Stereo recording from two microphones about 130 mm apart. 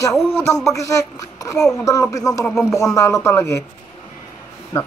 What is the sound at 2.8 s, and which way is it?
Speech, 25° left (ahead or behind).